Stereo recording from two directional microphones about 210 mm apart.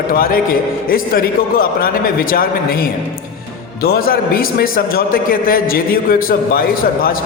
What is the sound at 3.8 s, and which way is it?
A man's voice, 45° left (ahead or behind).